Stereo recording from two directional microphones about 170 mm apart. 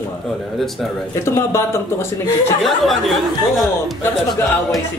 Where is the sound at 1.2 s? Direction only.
15° left (ahead or behind).